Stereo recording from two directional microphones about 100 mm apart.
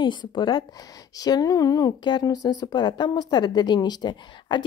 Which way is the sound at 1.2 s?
40° left (ahead or behind).